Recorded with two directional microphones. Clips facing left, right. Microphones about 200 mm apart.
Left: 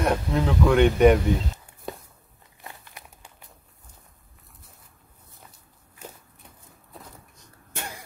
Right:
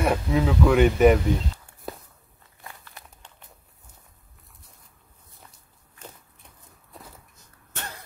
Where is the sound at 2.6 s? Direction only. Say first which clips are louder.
Left 1 dB; 15° left (ahead or behind).